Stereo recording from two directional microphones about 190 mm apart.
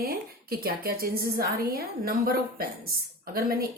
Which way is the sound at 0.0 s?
50° right (ahead or behind).